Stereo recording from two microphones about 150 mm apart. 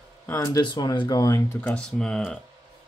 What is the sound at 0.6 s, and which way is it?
Speech, 30° left (ahead or behind).